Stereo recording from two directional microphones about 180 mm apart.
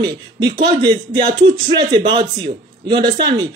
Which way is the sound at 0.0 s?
25° right (ahead or behind).